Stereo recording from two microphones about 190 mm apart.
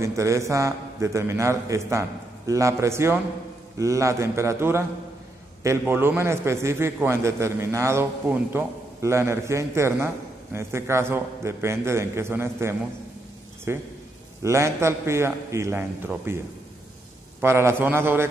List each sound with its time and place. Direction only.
0.0 s a man's voice: 15° right (ahead or behind)
17.4 s a man's voice: 15° right (ahead or behind)